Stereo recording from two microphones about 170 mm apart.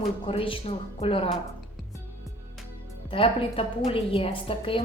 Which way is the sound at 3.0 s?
30° left (ahead or behind).